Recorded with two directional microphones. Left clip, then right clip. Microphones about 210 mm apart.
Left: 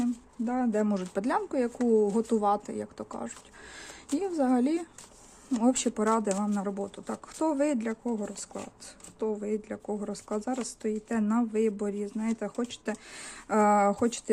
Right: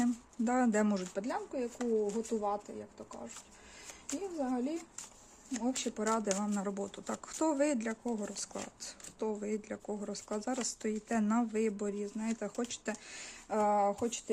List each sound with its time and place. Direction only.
0.0 s a sound: 10° right (ahead or behind)
1.1 s speech: 25° left (ahead or behind)
4.4 s speech: 30° left (ahead or behind); by 6.2 s 10° left (ahead or behind)
6.2 s speech: centre (ahead or behind)
13.5 s speech: 30° left (ahead or behind)